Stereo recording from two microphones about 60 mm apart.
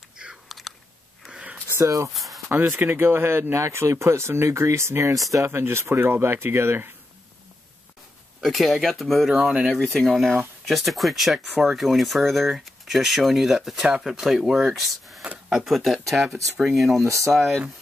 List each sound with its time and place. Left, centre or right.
0.5 s chewing: centre
1.7 s speech: right
2.1 s a sound: centre
2.5 s speech: right
8.4 s speech: centre